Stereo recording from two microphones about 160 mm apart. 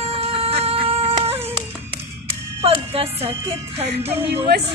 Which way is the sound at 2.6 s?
40° right (ahead or behind).